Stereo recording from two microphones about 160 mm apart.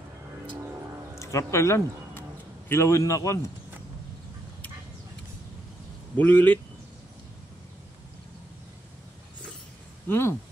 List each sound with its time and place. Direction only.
1.2 s a man's voice: 20° left (ahead or behind)
6.1 s speech: 10° left (ahead or behind)
10.0 s speech: 15° left (ahead or behind)